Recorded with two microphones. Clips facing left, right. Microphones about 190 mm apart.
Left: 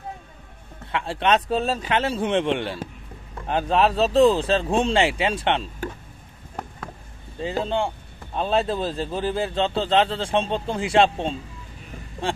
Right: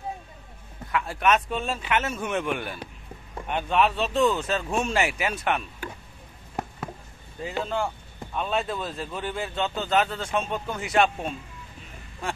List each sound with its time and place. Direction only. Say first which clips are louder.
0.9 s speech: left 2 dB; 30° left (ahead or behind)
7.3 s speech: left 4 dB; 30° left (ahead or behind)